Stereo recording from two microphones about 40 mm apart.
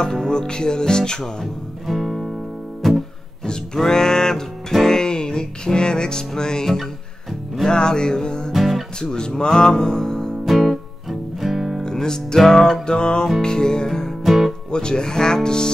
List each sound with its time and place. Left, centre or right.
0.0 s music: centre
1.9 s music: centre
2.8 s guitar: centre
3.4 s music: centre
8.5 s music: centre
9.0 s music: centre
10.4 s music: centre
11.8 s music: centre
14.2 s music: centre
14.7 s music: left